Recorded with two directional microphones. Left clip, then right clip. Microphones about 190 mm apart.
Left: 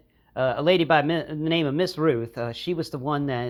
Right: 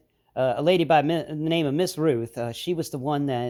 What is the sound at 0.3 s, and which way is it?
A man's voice, 45° right (ahead or behind).